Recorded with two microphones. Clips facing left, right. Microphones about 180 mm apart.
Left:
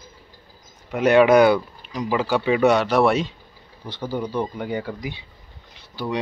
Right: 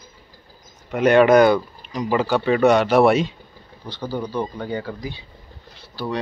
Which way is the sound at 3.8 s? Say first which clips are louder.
Even; 25° left (ahead or behind).